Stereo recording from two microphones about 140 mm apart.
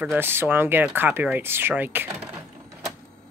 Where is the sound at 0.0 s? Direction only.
15° right (ahead or behind).